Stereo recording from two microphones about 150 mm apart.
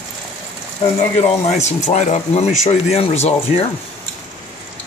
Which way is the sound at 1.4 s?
50° left (ahead or behind).